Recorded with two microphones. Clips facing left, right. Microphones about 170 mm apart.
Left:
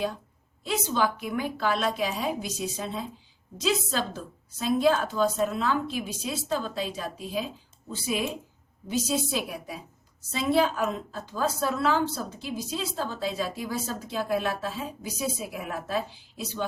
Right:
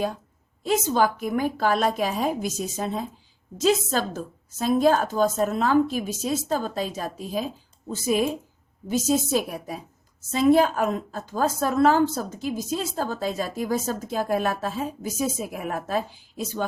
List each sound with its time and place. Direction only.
0.6 s a woman's voice: 45° right (ahead or behind)